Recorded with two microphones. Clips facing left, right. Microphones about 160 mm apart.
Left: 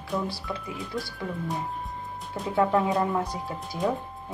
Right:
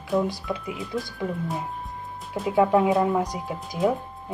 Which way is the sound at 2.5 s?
15° right (ahead or behind).